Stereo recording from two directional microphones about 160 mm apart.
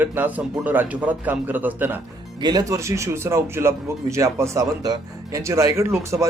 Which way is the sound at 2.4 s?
25° right (ahead or behind).